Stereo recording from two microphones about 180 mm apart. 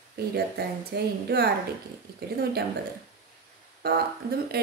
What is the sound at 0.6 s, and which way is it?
Speech, 65° right (ahead or behind).